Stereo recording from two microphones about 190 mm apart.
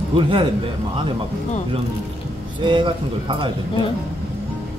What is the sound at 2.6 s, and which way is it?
Speech, 25° right (ahead or behind).